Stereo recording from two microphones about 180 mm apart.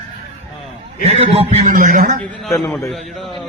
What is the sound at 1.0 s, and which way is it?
Speech, 35° right (ahead or behind).